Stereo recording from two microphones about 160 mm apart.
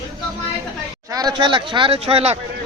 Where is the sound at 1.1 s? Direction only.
25° right (ahead or behind).